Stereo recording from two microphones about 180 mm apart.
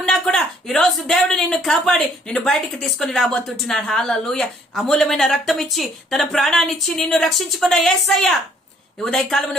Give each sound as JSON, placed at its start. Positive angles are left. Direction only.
{"t": 0.0, "sound": "a woman's voice", "side_deg": 5}